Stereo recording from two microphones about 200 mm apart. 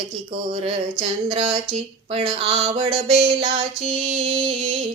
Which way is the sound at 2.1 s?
30° right (ahead or behind).